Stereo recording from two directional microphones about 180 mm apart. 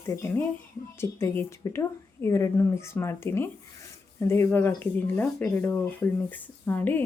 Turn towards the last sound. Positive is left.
turn(degrees=10)  # may be behind; listen again after turning